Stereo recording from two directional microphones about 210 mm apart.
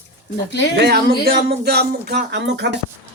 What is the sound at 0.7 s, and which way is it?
Speech, 50° right (ahead or behind).